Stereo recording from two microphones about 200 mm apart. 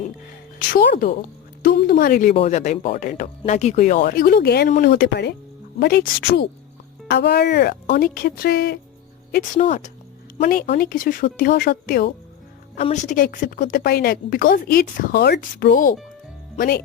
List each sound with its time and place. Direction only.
0.7 s a woman's voice: 45° left (ahead or behind)
2.3 s speech: 30° left (ahead or behind)
4.0 s a woman's voice: 45° left (ahead or behind)
9.3 s speech: 35° left (ahead or behind)
10.5 s a woman's voice: 45° left (ahead or behind)
12.7 s a woman's voice: 35° left (ahead or behind)